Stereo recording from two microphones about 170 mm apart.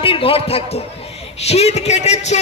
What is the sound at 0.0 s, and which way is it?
A man's voice, 30° left (ahead or behind).